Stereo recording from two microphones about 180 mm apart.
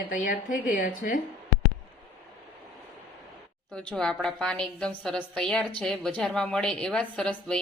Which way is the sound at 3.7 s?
5° left (ahead or behind).